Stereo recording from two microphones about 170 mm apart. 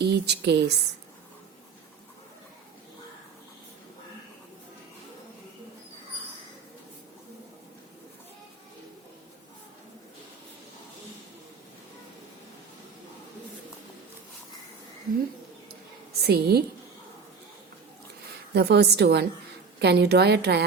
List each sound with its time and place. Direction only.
0.0 s speech: 80° right
16.2 s a woman's voice: 70° right (ahead or behind)
18.5 s a woman's voice: 70° right (ahead or behind)